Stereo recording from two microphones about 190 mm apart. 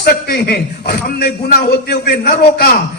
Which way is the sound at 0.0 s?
55° left (ahead or behind).